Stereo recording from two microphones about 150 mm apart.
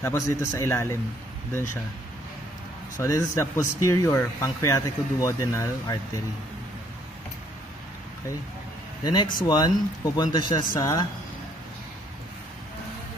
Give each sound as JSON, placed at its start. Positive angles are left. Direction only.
{"t": 0.0, "sound": "a man's voice", "side_deg": 20}
{"t": 3.0, "sound": "speech", "side_deg": 20}
{"t": 9.0, "sound": "speech", "side_deg": 30}